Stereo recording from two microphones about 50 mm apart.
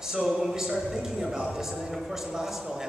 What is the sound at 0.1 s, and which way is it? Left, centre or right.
A man's voice, centre.